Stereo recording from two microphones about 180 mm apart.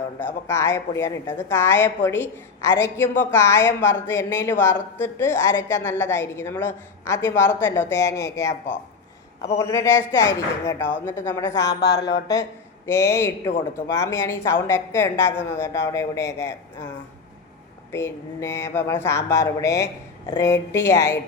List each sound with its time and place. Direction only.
0.2 s a woman's voice: 15° left (ahead or behind)
11.7 s speech: 65° left (ahead or behind)
12.3 s a woman's voice: 15° left (ahead or behind)
17.9 s a woman's voice: 15° left (ahead or behind)